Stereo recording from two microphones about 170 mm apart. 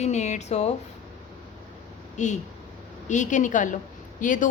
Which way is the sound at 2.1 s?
45° left (ahead or behind).